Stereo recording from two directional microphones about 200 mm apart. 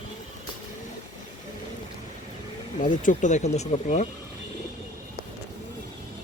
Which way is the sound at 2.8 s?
40° left (ahead or behind).